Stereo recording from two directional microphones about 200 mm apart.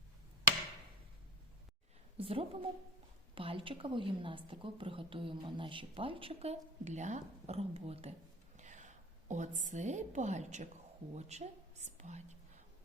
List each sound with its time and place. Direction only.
2.1 s a woman's voice: 30° right (ahead or behind)